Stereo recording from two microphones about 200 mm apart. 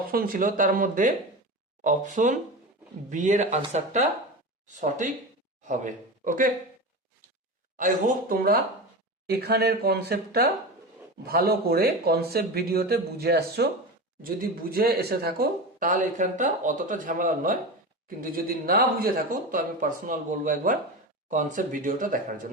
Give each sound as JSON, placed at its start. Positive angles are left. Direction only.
{"t": 0.1, "sound": "speech", "side_deg": -45}
{"t": 7.8, "sound": "speech", "side_deg": -40}